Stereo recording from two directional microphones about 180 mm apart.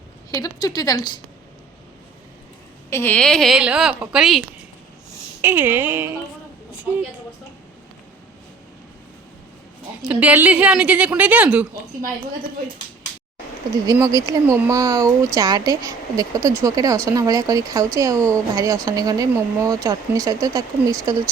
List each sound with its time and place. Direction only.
0.3 s a woman's voice: 20° left (ahead or behind)
2.9 s a woman's voice: 10° left (ahead or behind)
5.4 s a woman's voice: 10° right (ahead or behind)
10.0 s a woman's voice: 5° right (ahead or behind)
13.8 s a woman's voice: 20° right (ahead or behind)